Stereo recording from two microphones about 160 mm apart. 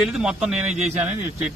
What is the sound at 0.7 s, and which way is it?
Speech, 45° right (ahead or behind).